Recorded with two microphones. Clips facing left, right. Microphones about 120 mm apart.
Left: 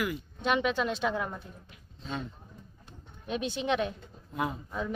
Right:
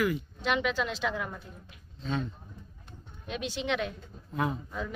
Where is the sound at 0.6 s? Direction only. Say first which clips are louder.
Left 2 dB; 40° left (ahead or behind).